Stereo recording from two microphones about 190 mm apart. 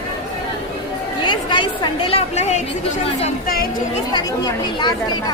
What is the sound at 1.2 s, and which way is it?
A woman's voice, 25° left (ahead or behind).